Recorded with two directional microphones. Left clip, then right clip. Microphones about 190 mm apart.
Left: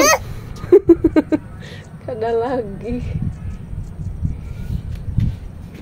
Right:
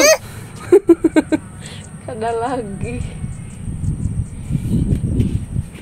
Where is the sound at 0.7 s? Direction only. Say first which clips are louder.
Even; 5° left (ahead or behind).